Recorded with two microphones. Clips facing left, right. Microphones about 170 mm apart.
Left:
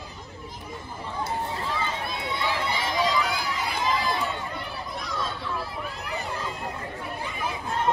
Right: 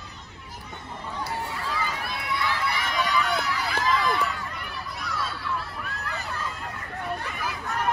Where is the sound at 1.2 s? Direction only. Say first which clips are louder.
Left 3 dB; 25° left (ahead or behind).